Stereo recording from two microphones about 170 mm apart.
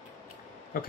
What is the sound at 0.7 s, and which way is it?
Speech, 55° left (ahead or behind).